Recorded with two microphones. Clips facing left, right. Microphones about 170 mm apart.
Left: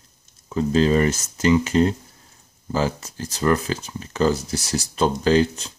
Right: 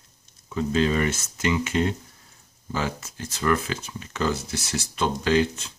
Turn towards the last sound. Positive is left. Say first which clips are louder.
# left 4 dB
turn(degrees=35)  # may be behind; listen again after turning